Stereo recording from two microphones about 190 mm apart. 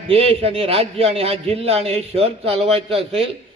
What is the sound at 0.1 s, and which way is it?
A man's voice, 30° right (ahead or behind).